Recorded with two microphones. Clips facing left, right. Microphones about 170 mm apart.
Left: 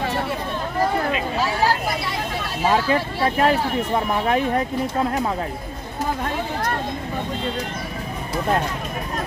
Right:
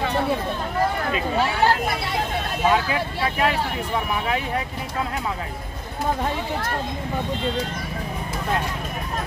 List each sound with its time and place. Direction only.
2.7 s speech: 40° left (ahead or behind)